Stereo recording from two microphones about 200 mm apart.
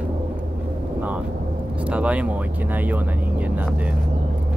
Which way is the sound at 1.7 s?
5° right (ahead or behind).